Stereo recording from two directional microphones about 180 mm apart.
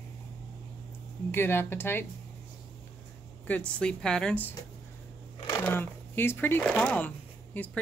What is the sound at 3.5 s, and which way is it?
Speech, 5° left (ahead or behind).